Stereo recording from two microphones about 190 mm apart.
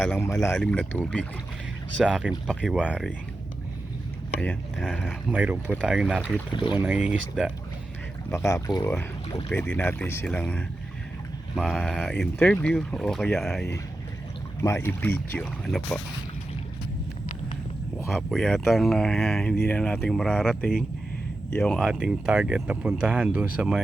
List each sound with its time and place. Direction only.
0.0 s speech: 10° left (ahead or behind)
4.4 s speech: 5° left (ahead or behind)
5.3 s speech: 10° right (ahead or behind)
6.5 s speech: 25° left (ahead or behind)
6.7 s speech: 10° right (ahead or behind)
8.3 s speech: 15° left (ahead or behind)
14.6 s speech: 15° left (ahead or behind)
18.1 s speech: centre (ahead or behind)